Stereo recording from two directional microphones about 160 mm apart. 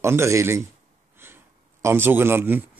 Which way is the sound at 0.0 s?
15° right (ahead or behind).